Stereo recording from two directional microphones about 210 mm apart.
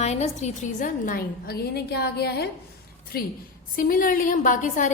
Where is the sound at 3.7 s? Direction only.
40° left (ahead or behind).